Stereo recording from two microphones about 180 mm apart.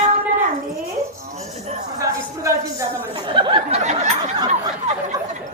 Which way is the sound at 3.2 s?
25° right (ahead or behind).